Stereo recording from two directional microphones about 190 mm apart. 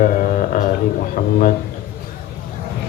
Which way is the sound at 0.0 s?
45° left (ahead or behind).